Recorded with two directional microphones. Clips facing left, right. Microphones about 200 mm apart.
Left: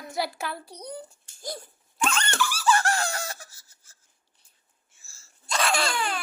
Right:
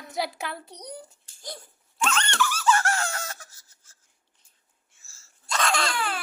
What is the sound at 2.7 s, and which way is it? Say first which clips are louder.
Squeak: left 1 dB; 35° left (ahead or behind).